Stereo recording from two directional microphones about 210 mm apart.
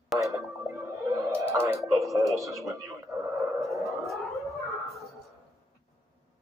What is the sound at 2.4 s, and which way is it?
Speech, 15° right (ahead or behind).